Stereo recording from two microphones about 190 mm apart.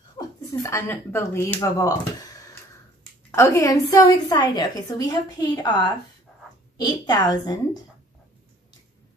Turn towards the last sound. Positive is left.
turn(degrees=20)  # may be behind; listen again after turning